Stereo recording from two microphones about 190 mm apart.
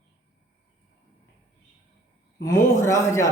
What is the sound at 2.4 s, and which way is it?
Speech, 15° left (ahead or behind).